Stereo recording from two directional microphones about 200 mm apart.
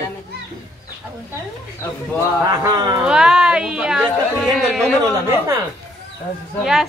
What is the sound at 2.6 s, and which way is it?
Speech, 20° right (ahead or behind).